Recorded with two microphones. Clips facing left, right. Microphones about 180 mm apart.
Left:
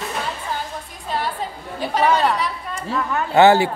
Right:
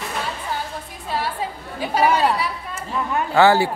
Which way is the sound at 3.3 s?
20° left (ahead or behind).